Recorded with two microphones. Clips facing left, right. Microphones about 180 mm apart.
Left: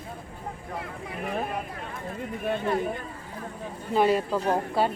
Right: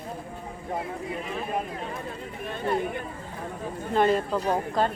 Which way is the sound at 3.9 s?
5° left (ahead or behind).